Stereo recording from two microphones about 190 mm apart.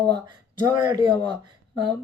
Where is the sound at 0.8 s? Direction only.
20° right (ahead or behind).